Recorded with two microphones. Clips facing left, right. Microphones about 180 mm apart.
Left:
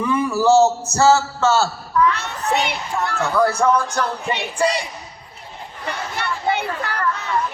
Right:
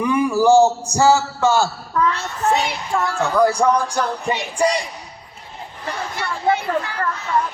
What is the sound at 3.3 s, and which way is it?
Speech, 15° right (ahead or behind).